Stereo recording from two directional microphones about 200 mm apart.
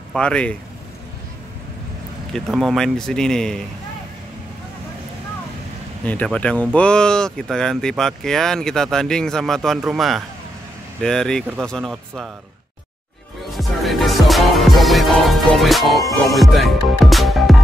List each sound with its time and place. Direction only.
0.1 s speech: 5° left (ahead or behind)
2.3 s speech: centre (ahead or behind)
6.0 s speech: 5° left (ahead or behind)
13.5 s music: centre (ahead or behind)
16.0 s music: 15° left (ahead or behind)
16.3 s music: centre (ahead or behind)